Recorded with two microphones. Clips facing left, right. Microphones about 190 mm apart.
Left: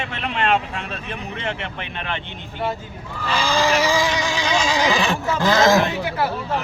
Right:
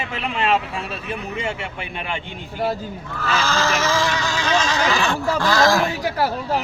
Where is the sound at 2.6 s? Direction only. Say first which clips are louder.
Right 2 dB; 40° right (ahead or behind).